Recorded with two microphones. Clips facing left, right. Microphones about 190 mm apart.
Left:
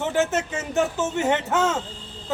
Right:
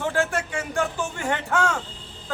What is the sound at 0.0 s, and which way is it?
A man's voice, 20° left (ahead or behind).